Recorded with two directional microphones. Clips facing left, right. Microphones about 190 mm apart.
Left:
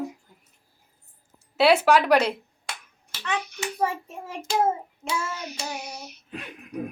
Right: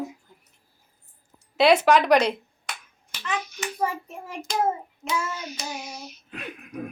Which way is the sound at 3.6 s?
25° left (ahead or behind).